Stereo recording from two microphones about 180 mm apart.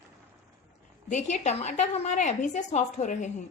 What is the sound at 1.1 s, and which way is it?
A woman's voice, 40° left (ahead or behind).